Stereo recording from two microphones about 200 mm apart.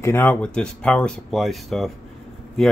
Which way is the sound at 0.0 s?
10° left (ahead or behind).